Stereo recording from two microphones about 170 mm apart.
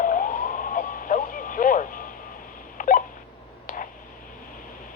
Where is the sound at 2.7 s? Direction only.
50° left (ahead or behind).